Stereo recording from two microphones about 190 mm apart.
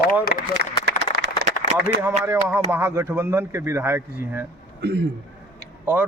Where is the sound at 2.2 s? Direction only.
15° right (ahead or behind).